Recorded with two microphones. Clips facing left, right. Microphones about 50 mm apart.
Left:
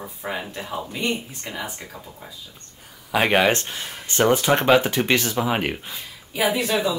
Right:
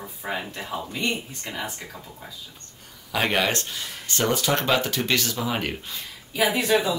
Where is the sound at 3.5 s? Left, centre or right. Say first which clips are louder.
Left 3 dB; left.